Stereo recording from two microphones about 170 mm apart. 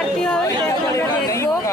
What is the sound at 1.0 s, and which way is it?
Chatter, 15° left (ahead or behind).